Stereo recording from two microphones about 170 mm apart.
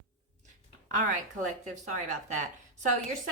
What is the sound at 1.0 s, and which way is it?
Speech, 50° right (ahead or behind).